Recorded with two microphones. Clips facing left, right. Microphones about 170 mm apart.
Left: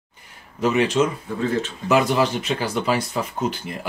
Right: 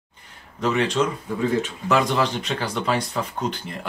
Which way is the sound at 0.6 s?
5° left (ahead or behind).